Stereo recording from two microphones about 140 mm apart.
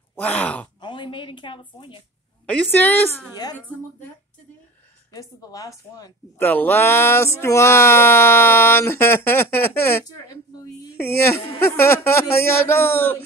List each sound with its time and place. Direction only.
0.1 s speech: 10° left (ahead or behind)
0.7 s speech: 35° left (ahead or behind)
2.4 s speech: 10° left (ahead or behind)
5.1 s a woman's voice: 25° left (ahead or behind)
6.4 s speech: 15° left (ahead or behind)